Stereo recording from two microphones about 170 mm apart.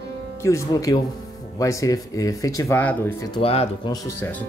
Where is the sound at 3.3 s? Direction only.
35° left (ahead or behind).